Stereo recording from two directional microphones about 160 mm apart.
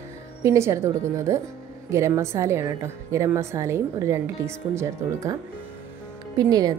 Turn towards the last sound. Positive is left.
turn(degrees=-25)  # may be behind; listen again after turning